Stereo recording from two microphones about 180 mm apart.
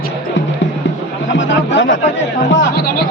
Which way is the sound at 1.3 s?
90° left.